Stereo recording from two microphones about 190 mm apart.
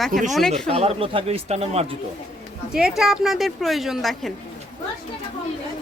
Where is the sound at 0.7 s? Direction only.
30° right (ahead or behind).